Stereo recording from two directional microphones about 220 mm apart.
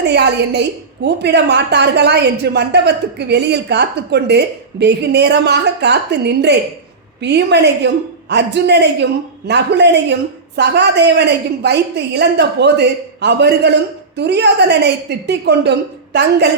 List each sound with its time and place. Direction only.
0.0 s a woman's voice: 50° right (ahead or behind)